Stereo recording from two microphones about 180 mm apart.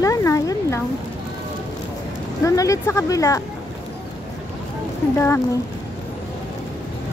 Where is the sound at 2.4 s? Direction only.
20° left (ahead or behind).